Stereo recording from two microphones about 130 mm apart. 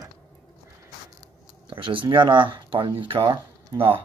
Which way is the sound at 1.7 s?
40° right (ahead or behind).